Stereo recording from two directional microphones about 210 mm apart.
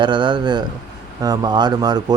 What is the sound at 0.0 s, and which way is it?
Speech, 20° right (ahead or behind).